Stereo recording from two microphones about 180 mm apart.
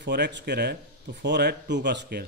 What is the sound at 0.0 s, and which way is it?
Speech, 75° right (ahead or behind).